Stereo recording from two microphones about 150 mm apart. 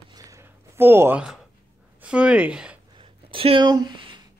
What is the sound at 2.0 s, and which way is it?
Speech, 5° right (ahead or behind).